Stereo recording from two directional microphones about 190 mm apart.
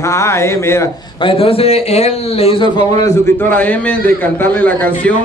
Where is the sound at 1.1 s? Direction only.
30° left (ahead or behind); by 5.1 s 10° left (ahead or behind).